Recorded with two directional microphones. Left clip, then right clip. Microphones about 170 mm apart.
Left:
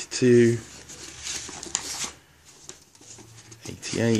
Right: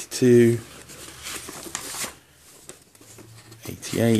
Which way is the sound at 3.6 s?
15° right (ahead or behind).